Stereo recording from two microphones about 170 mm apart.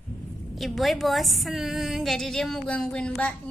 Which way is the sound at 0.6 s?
Centre (ahead or behind).